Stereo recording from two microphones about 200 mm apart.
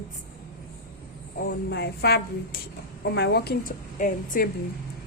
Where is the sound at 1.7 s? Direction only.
55° left (ahead or behind).